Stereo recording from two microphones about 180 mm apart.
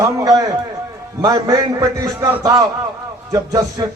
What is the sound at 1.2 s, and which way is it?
Music, 20° right (ahead or behind).